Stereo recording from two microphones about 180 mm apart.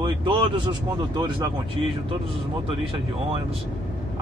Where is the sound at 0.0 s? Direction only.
25° right (ahead or behind).